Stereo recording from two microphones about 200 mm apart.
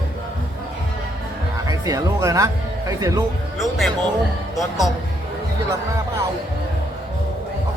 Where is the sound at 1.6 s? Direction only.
15° right (ahead or behind).